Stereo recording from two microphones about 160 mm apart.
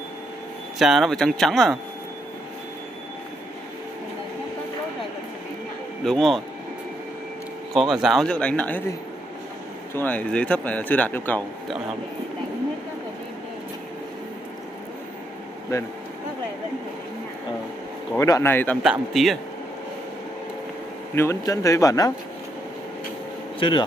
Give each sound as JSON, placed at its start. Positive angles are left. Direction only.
{"t": 0.7, "sound": "speech", "side_deg": 0}
{"t": 6.0, "sound": "speech", "side_deg": 0}
{"t": 7.7, "sound": "speech", "side_deg": 0}
{"t": 9.9, "sound": "a man's voice", "side_deg": 10}
{"t": 15.7, "sound": "speech", "side_deg": 20}
{"t": 18.1, "sound": "a man's voice", "side_deg": 20}
{"t": 18.8, "sound": "speech", "side_deg": 0}
{"t": 21.1, "sound": "speech", "side_deg": 15}